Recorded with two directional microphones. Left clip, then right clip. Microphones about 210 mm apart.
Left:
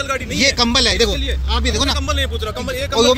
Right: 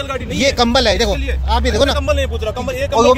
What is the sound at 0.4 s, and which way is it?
Speech, 25° right (ahead or behind).